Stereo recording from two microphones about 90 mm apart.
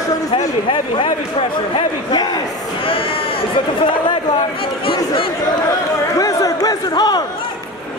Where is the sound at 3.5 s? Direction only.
70° left (ahead or behind).